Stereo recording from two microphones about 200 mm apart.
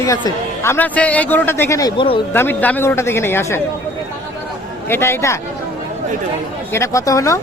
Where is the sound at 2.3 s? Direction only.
10° left (ahead or behind).